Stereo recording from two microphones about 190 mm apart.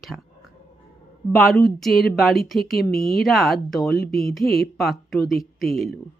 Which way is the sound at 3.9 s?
60° left (ahead or behind).